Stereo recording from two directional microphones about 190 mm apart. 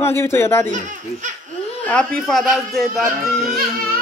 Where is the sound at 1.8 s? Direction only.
5° left (ahead or behind).